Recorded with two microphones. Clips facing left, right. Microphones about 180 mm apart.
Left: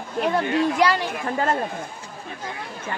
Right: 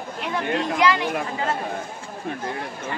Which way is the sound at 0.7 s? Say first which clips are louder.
Even; 35° left (ahead or behind).